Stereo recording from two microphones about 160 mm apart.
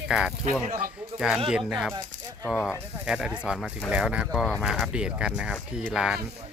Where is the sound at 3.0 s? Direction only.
5° right (ahead or behind).